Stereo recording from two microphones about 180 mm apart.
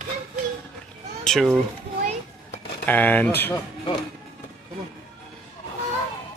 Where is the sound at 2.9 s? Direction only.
10° left (ahead or behind).